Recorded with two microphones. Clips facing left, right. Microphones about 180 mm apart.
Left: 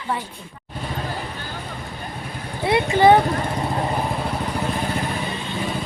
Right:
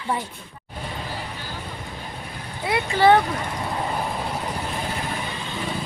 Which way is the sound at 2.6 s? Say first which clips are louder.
Left 3 dB; 20° left (ahead or behind).